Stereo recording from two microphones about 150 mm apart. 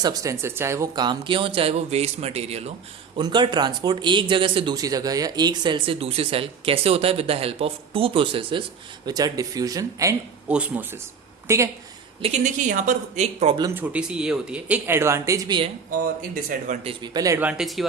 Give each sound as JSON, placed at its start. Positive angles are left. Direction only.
{"t": 0.0, "sound": "speech", "side_deg": -25}
{"t": 3.2, "sound": "speech", "side_deg": -30}
{"t": 10.5, "sound": "a woman's voice", "side_deg": -10}
{"t": 12.2, "sound": "speech", "side_deg": -50}
{"t": 13.7, "sound": "speech", "side_deg": -10}
{"t": 15.9, "sound": "speech", "side_deg": -65}
{"t": 16.8, "sound": "speech", "side_deg": -25}
{"t": 17.4, "sound": "speech", "side_deg": 0}